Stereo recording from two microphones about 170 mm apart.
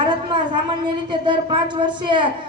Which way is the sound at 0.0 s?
25° right (ahead or behind).